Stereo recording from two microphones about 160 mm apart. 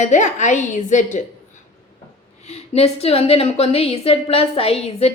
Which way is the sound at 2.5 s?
40° left (ahead or behind).